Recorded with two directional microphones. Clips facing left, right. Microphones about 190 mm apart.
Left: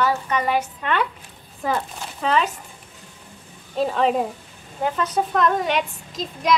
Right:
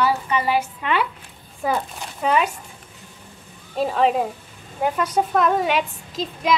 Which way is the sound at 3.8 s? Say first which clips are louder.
Right 1 dB; 5° right (ahead or behind).